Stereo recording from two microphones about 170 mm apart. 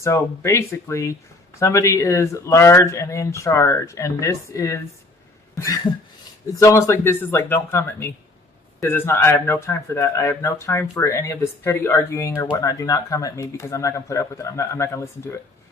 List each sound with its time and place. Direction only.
0.0 s speech: 15° left (ahead or behind)
5.5 s cough: 20° left (ahead or behind)
6.5 s speech: 20° left (ahead or behind)